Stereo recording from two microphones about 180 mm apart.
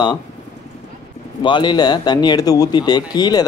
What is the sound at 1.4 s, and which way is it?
Speech, 25° left (ahead or behind).